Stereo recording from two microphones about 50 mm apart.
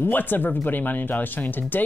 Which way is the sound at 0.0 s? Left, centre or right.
Left.